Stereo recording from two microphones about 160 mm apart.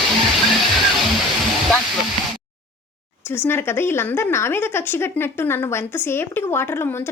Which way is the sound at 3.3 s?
15° left (ahead or behind).